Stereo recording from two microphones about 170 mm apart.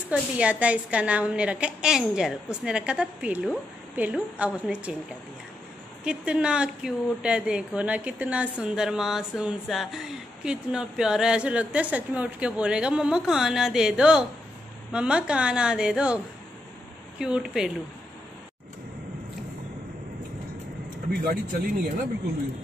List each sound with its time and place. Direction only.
0.1 s a woman's voice: 5° right (ahead or behind)
6.0 s a woman's voice: 5° right (ahead or behind)
17.2 s a woman's voice: 5° right (ahead or behind)
21.1 s speech: 60° right (ahead or behind)